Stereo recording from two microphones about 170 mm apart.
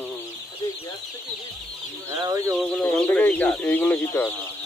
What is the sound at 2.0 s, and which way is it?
Speech, 20° right (ahead or behind).